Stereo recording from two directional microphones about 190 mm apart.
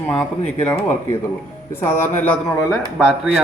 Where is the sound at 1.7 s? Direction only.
10° left (ahead or behind).